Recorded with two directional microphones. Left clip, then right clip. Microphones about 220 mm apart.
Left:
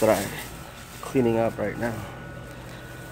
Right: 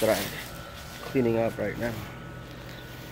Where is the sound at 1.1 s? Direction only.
10° left (ahead or behind).